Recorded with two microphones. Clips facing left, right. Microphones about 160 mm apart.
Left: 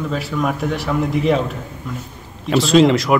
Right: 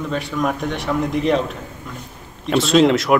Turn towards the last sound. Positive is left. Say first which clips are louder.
# left 1 dB
turn(degrees=0)  # may be behind; listen again after turning